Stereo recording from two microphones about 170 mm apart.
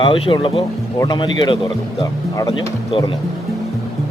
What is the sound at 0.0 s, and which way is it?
Speech, 30° left (ahead or behind).